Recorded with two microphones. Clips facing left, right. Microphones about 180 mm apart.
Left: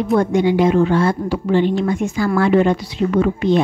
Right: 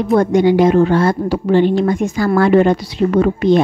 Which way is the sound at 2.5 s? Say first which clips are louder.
Right 3 dB; 50° right (ahead or behind).